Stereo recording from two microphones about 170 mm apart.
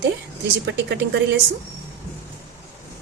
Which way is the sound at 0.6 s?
90° right.